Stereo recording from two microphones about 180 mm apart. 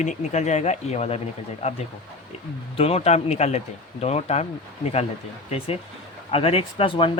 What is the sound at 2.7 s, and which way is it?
Speech, 35° left (ahead or behind).